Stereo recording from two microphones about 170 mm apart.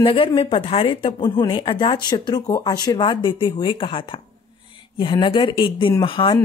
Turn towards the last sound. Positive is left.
turn(degrees=30)  # may be behind; listen again after turning